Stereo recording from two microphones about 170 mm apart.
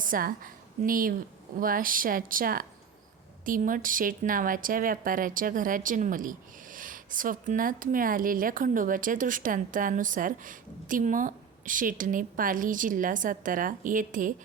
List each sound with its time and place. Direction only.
0.0 s a woman's voice: 55° right (ahead or behind)